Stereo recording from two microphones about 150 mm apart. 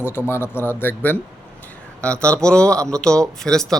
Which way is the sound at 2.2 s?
5° left (ahead or behind).